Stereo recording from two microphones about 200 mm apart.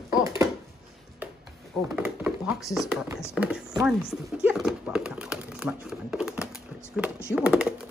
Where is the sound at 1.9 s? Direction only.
5° right (ahead or behind).